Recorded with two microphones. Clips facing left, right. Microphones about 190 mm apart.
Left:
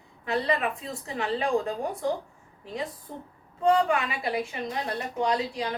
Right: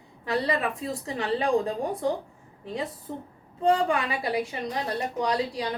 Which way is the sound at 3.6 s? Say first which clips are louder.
Even; 30° right (ahead or behind).